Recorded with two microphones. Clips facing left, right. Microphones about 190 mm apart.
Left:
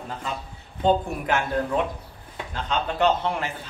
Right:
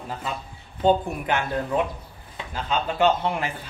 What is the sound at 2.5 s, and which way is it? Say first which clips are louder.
Speech: right 1 dB; 10° right (ahead or behind).